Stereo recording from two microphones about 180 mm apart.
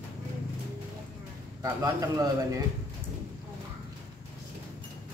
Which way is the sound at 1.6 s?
20° right (ahead or behind).